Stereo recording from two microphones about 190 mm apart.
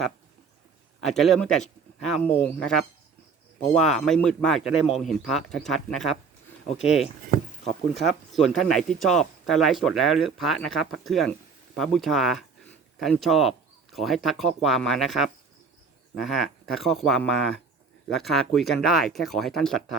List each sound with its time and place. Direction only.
1.0 s speech: centre (ahead or behind)
7.3 s a sound: 50° right (ahead or behind)
7.9 s speech: centre (ahead or behind)